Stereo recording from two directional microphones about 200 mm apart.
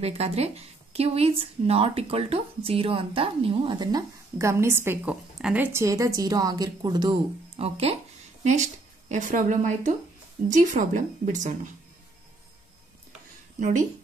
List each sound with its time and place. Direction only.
0.0 s a woman's voice: 30° right (ahead or behind)
9.1 s a woman's voice: 40° right (ahead or behind)
13.6 s speech: 40° right (ahead or behind)